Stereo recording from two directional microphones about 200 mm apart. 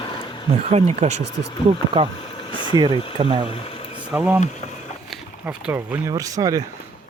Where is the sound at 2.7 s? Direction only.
20° right (ahead or behind).